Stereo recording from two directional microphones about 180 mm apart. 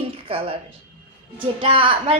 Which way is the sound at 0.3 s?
30° right (ahead or behind).